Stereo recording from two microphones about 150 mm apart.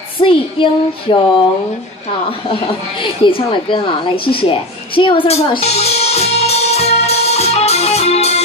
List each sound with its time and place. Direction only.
0.2 s a woman's voice: 35° left (ahead or behind)
2.5 s a woman's voice: 35° left (ahead or behind)
4.4 s music: 35° left (ahead or behind)